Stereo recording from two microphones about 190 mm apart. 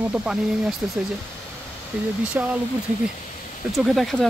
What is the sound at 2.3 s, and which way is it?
Speech, 10° right (ahead or behind).